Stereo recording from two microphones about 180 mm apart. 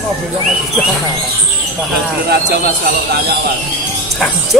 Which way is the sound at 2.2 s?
60° right (ahead or behind).